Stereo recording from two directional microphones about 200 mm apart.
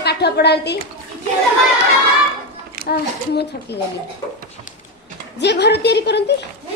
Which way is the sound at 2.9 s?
55° left (ahead or behind).